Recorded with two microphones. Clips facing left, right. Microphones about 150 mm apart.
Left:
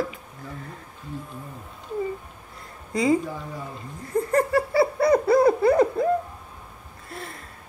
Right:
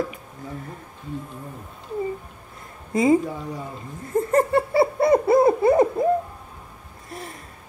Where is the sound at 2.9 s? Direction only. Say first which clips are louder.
Right 3 dB; 20° right (ahead or behind).